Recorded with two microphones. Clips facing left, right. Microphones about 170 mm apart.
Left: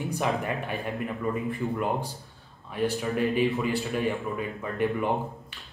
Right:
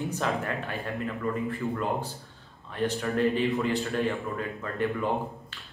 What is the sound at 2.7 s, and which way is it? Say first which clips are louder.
A man's voice: left 1 dB; 10° left (ahead or behind).